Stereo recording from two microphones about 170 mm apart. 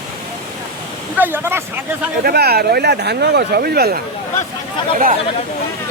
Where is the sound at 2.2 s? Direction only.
65° right (ahead or behind).